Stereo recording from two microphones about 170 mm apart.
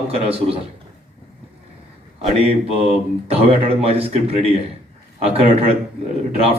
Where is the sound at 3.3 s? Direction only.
35° right (ahead or behind).